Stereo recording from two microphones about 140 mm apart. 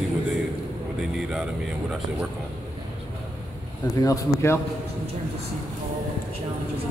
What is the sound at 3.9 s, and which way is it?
Speech, 20° left (ahead or behind).